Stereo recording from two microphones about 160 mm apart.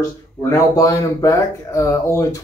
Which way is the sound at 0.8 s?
20° left (ahead or behind).